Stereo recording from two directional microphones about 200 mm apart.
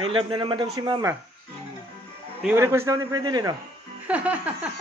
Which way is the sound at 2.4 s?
15° right (ahead or behind).